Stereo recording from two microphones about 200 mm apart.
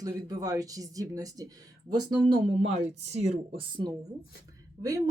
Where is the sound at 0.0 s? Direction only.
20° right (ahead or behind).